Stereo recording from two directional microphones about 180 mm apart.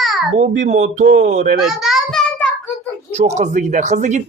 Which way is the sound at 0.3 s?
45° right (ahead or behind).